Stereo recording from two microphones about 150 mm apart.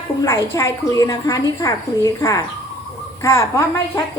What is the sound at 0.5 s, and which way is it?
A woman's voice, 20° left (ahead or behind).